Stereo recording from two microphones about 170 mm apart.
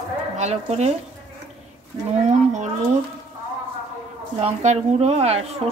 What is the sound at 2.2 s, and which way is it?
Speech, 45° right (ahead or behind).